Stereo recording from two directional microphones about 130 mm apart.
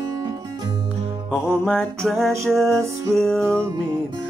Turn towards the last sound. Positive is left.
turn(degrees=-20)  # may be behind; listen again after turning